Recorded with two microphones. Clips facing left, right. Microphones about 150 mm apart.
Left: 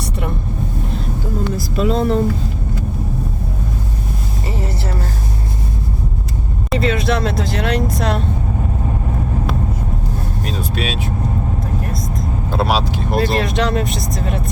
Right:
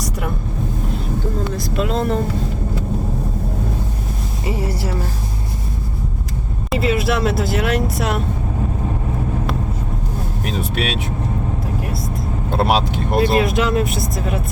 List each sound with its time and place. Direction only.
1.5 s speech: centre (ahead or behind)
4.4 s a sound: 10° right (ahead or behind)
6.7 s speech: 5° right (ahead or behind)
10.5 s vehicle: 65° right (ahead or behind)
12.5 s vehicle: 55° right (ahead or behind)
13.1 s speech: 5° right (ahead or behind)